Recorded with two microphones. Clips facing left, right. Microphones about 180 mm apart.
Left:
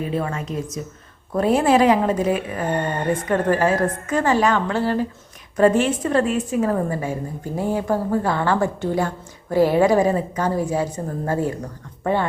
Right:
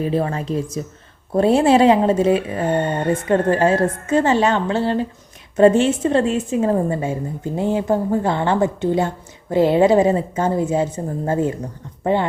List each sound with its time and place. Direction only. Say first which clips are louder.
0.0 s a woman's voice: right 4 dB; 35° right (ahead or behind)